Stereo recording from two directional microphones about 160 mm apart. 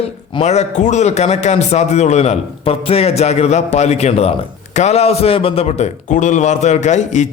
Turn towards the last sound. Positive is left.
turn(degrees=50)  # may be behind; listen again after turning